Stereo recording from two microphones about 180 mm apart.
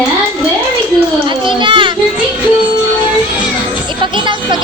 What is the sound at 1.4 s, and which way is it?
Speech, 25° right (ahead or behind).